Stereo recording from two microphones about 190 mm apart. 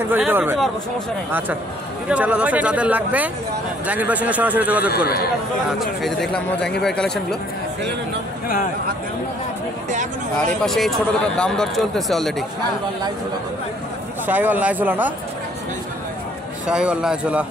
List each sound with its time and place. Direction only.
0.1 s speech: 10° right (ahead or behind)
2.0 s speech: 5° right (ahead or behind)
4.9 s a man's voice: 55° left (ahead or behind)
5.7 s speech: centre (ahead or behind)
10.4 s speech: centre (ahead or behind)
14.2 s speech: 10° right (ahead or behind)
16.6 s speech: 5° right (ahead or behind)